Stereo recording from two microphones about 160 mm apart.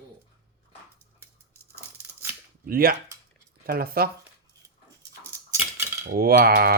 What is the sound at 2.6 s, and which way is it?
Speech, 65° right (ahead or behind).